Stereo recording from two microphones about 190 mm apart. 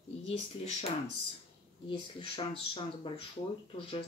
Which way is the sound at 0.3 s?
30° left (ahead or behind).